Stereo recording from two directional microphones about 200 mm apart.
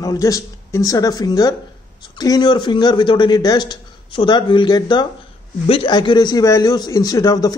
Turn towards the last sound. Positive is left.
turn(degrees=20)  # may be behind; listen again after turning